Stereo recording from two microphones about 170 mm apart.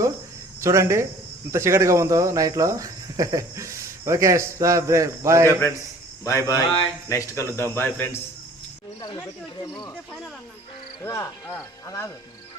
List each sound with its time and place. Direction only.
0.6 s speech: 15° right (ahead or behind)
5.5 s speech: 15° left (ahead or behind)
9.0 s speech: 25° left (ahead or behind)
11.0 s speech: 15° left (ahead or behind)